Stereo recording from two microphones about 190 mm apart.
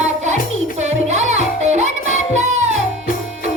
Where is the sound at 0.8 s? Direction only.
35° right (ahead or behind).